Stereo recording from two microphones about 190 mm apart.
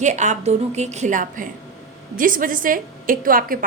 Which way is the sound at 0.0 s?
40° right (ahead or behind).